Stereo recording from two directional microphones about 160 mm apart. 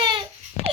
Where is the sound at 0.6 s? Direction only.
40° left (ahead or behind).